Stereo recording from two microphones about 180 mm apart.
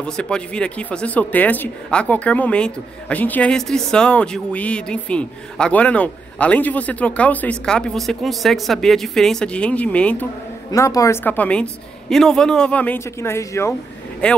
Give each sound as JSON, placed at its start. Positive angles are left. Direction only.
{"t": 0.0, "sound": "speech", "side_deg": 5}
{"t": 10.7, "sound": "speech", "side_deg": 20}
{"t": 14.2, "sound": "speech", "side_deg": 5}